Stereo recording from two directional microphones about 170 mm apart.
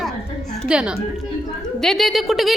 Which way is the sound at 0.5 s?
Centre (ahead or behind).